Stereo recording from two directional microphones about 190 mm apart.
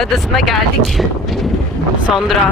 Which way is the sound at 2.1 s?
Centre (ahead or behind).